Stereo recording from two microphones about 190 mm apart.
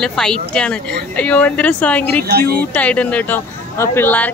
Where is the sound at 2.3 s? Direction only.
55° right (ahead or behind).